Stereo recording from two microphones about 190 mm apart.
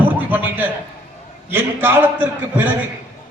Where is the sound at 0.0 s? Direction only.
10° right (ahead or behind).